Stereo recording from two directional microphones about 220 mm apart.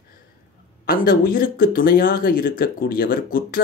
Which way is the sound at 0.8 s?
40° left (ahead or behind).